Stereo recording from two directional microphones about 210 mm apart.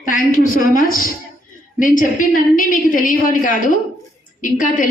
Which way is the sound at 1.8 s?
40° left (ahead or behind).